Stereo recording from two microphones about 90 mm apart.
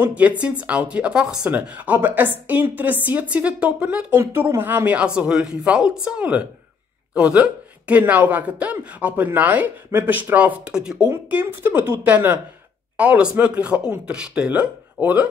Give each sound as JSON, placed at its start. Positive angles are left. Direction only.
{"t": 0.0, "sound": "speech", "side_deg": -15}
{"t": 4.2, "sound": "speech", "side_deg": -30}
{"t": 11.2, "sound": "a woman's voice", "side_deg": -20}